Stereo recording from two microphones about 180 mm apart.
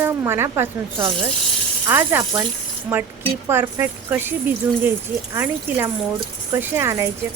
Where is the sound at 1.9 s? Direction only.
10° right (ahead or behind).